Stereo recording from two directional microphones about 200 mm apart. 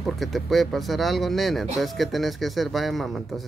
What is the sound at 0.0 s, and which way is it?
Speech, centre (ahead or behind).